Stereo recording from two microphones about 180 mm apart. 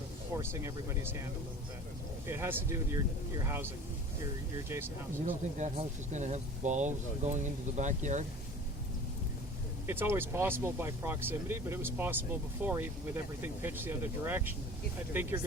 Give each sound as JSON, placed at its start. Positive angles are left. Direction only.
{"t": 0.3, "sound": "speech", "side_deg": -15}
{"t": 5.2, "sound": "speech", "side_deg": -40}
{"t": 9.8, "sound": "speech", "side_deg": -10}